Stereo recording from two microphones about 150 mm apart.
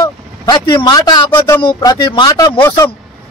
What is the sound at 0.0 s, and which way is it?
A man's voice, 30° left (ahead or behind).